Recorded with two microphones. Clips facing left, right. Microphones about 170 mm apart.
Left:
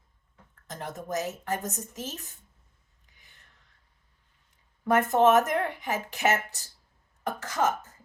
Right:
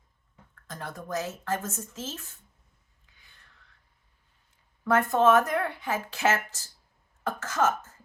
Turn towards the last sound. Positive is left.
turn(degrees=15)  # may be behind; listen again after turning